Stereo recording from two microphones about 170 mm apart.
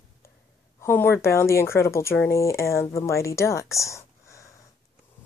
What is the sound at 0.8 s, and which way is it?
Speech, 10° left (ahead or behind).